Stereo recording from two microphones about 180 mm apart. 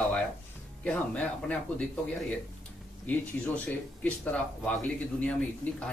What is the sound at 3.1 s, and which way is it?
Speech, 10° left (ahead or behind).